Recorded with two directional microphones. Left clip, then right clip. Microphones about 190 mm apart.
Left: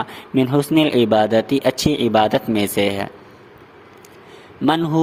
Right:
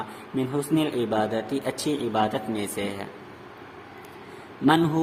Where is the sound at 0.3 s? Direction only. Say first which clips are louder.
Left 9 dB; 45° left (ahead or behind).